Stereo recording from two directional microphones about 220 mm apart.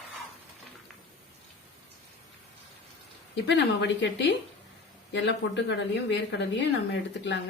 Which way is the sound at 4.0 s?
55° left (ahead or behind).